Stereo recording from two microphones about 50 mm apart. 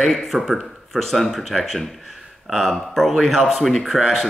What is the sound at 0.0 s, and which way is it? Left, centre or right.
Speech, centre.